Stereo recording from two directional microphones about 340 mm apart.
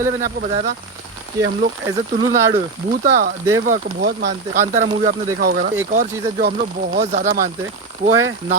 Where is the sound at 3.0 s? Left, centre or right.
Right.